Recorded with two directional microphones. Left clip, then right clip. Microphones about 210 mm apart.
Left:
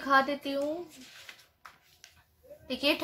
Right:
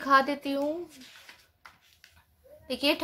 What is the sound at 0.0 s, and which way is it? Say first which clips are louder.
Speech: right 2 dB; 40° right (ahead or behind).